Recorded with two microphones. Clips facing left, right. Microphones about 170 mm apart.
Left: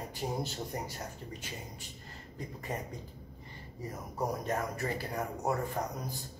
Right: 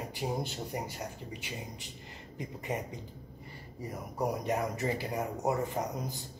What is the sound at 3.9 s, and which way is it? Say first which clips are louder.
Speech: right 2 dB; 15° right (ahead or behind).